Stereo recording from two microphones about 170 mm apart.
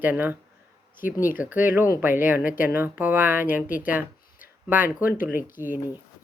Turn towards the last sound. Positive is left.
turn(degrees=-10)  # may be behind; listen again after turning